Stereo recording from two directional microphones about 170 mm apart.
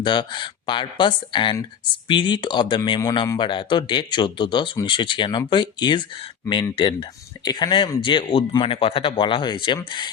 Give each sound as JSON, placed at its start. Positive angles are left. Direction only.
{"t": 0.0, "sound": "a man's voice", "side_deg": 25}